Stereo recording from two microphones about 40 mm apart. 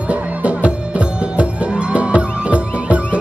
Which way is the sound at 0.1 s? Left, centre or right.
Right.